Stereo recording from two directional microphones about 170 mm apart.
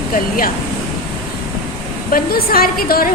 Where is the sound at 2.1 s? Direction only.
60° left (ahead or behind).